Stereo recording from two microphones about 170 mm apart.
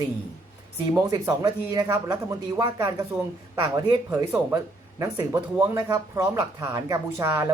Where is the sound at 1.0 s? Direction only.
20° right (ahead or behind).